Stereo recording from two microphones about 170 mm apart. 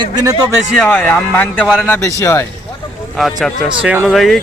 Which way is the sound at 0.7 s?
5° left (ahead or behind).